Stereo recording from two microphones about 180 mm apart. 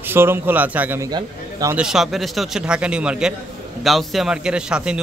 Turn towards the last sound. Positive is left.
turn(degrees=-5)  # may be behind; listen again after turning